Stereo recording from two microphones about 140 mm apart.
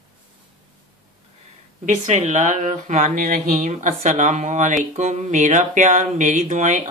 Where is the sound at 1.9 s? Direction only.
55° right (ahead or behind).